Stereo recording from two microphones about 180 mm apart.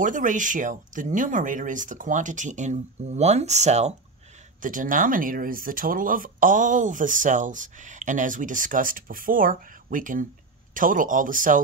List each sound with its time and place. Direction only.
0.0 s speech: 45° right (ahead or behind)